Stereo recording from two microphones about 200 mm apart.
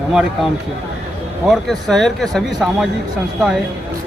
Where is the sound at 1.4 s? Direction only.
Centre (ahead or behind).